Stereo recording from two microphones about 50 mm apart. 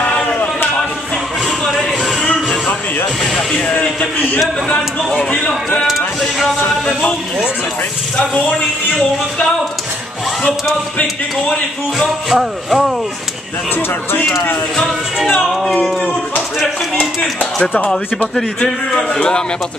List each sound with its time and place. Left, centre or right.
2.2 s music: left
3.8 s a sound: left
5.9 s a sound: centre
11.0 s speech: left
12.3 s speech: centre
15.4 s speech: centre
16.0 s a sound: left
17.0 s speech: left
18.3 s a man's voice: centre